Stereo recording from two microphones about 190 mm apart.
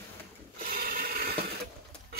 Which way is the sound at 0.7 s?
50° right (ahead or behind).